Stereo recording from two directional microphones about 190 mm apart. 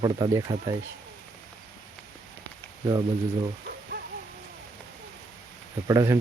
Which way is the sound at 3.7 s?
60° right (ahead or behind).